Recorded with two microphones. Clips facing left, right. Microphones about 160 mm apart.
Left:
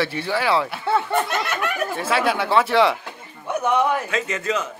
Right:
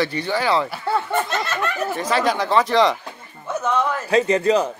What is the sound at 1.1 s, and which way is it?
Speech, 10° left (ahead or behind).